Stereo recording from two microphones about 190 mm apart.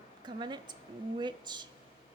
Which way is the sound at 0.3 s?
25° right (ahead or behind).